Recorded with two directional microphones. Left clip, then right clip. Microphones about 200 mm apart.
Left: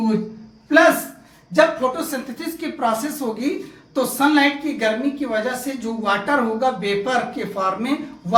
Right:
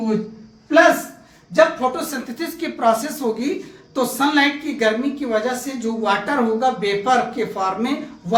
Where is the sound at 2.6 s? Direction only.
25° right (ahead or behind).